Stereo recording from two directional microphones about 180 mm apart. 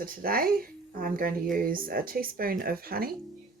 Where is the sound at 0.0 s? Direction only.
55° right (ahead or behind).